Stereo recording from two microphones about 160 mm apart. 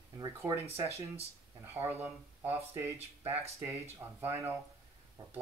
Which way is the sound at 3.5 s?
15° right (ahead or behind).